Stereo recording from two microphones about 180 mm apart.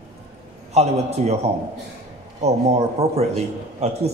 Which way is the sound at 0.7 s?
35° right (ahead or behind).